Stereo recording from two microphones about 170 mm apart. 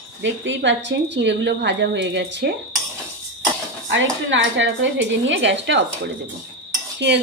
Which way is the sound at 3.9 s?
90° right.